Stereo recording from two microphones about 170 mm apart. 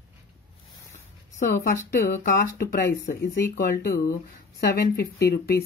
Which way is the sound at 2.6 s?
55° left (ahead or behind).